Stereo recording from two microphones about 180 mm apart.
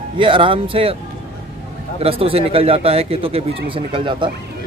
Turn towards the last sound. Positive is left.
turn(degrees=-30)  # may be behind; listen again after turning